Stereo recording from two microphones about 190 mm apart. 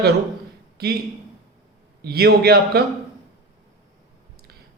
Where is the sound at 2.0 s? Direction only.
55° right (ahead or behind).